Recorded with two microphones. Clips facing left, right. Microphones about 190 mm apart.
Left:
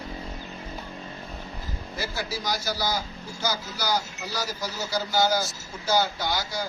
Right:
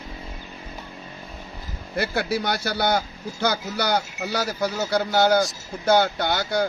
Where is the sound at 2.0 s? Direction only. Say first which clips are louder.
Right 8 dB; 60° right (ahead or behind).